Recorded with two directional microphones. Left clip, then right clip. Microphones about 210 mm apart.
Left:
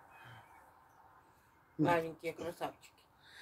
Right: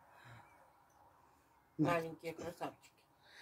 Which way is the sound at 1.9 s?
20° left (ahead or behind).